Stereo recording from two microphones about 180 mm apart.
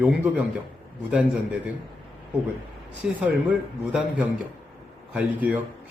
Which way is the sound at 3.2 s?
5° right (ahead or behind).